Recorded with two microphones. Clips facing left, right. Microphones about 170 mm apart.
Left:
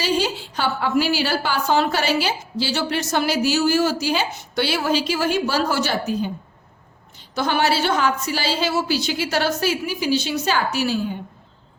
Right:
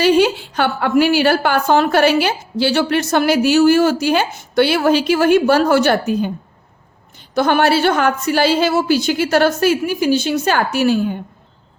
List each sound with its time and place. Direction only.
0.0 s a woman's voice: 60° right (ahead or behind)
7.3 s a woman's voice: 55° right (ahead or behind)